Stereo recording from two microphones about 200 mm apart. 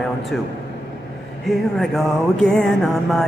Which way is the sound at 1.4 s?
Centre (ahead or behind).